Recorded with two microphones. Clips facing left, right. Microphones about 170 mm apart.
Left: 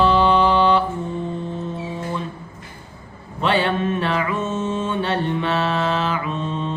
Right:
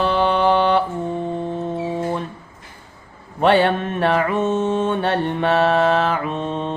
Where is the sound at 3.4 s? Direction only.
55° right (ahead or behind).